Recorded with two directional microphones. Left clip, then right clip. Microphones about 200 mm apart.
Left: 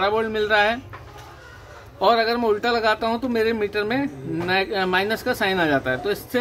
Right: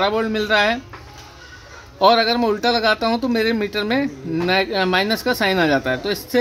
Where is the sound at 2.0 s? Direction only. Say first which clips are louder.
Right 4 dB; 40° right (ahead or behind).